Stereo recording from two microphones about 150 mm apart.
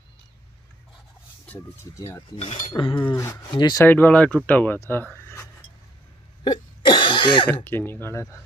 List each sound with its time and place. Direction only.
1.4 s speech: 10° left (ahead or behind)
2.0 s speech: 20° left (ahead or behind)
2.3 s cutlery: 50° left (ahead or behind)
2.7 s a sound: 35° left (ahead or behind)
3.2 s speech: 20° left (ahead or behind)
3.4 s speech: 30° left (ahead or behind)
3.8 s speech: 15° left (ahead or behind)
5.1 s cutlery: 15° left (ahead or behind)
6.4 s hiccup: 30° left (ahead or behind)
7.4 s speech: 15° left (ahead or behind)